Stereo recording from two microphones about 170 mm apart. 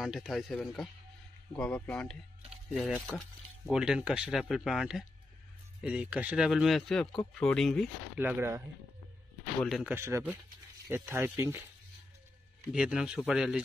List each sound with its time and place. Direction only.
0.0 s speech: centre (ahead or behind)
8.2 s speech: 10° right (ahead or behind)
9.6 s speech: centre (ahead or behind)
9.9 s speech: 15° right (ahead or behind)
12.7 s speech: 5° right (ahead or behind)